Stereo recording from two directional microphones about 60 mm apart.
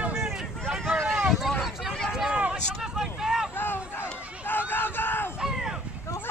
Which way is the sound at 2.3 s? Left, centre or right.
Right.